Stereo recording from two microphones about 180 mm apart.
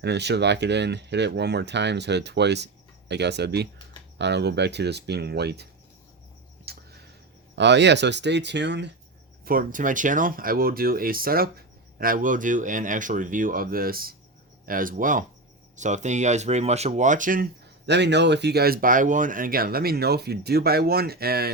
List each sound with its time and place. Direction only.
0.0 s speech: 70° right (ahead or behind)
6.7 s a sound: 60° right (ahead or behind)
7.5 s speech: 75° right (ahead or behind)
9.4 s speech: 55° right (ahead or behind)
17.8 s speech: 70° right (ahead or behind)